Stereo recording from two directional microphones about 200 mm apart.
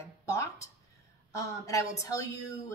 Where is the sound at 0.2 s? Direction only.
15° left (ahead or behind).